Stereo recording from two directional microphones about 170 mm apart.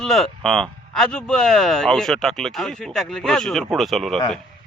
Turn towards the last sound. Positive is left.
turn(degrees=0)  # may be behind; listen again after turning